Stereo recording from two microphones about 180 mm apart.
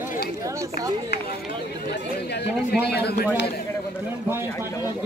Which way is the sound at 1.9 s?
65° left (ahead or behind).